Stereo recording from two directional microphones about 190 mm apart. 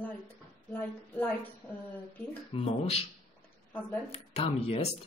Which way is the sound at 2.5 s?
30° left (ahead or behind).